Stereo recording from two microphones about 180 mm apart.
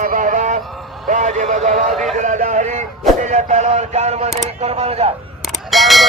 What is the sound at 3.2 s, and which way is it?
Speech, 40° right (ahead or behind).